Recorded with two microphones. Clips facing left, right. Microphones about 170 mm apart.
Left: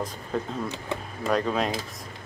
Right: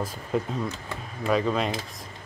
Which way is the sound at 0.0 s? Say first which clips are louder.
Right 2 dB; 5° right (ahead or behind).